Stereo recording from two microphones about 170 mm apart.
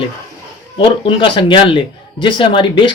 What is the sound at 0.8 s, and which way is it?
A man's voice, 30° left (ahead or behind).